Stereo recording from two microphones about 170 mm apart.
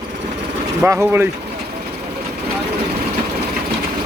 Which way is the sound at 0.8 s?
15° right (ahead or behind).